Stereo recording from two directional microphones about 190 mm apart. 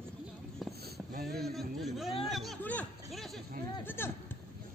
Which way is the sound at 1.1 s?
50° right (ahead or behind).